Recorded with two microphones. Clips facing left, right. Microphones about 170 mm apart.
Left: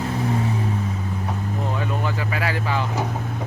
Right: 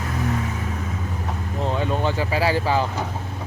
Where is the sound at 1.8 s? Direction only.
30° right (ahead or behind).